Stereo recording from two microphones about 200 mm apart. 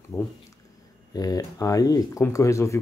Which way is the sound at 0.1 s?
15° left (ahead or behind).